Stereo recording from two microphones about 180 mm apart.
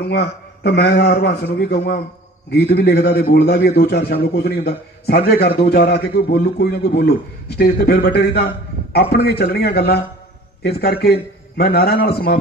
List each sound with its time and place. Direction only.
0.0 s a man's voice: 65° left (ahead or behind)